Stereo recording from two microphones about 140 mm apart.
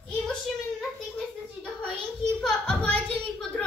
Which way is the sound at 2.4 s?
5° left (ahead or behind).